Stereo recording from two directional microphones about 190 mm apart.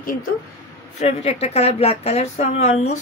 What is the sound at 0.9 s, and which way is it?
A woman's voice, 35° left (ahead or behind).